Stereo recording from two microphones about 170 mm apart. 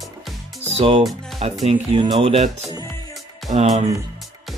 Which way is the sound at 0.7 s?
35° right (ahead or behind).